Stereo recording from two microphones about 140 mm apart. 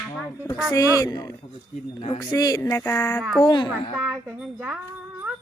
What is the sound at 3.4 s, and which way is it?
Speech, 35° left (ahead or behind).